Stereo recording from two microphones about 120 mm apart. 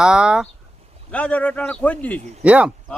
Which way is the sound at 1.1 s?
10° left (ahead or behind).